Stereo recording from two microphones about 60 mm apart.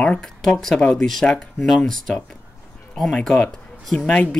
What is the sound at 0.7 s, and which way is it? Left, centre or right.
Speech, centre.